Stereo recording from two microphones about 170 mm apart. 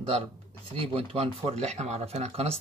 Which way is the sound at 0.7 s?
35° right (ahead or behind).